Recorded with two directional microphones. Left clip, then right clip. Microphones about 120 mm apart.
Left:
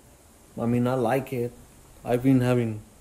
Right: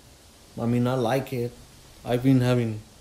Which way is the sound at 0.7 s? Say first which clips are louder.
Even; 30° right (ahead or behind).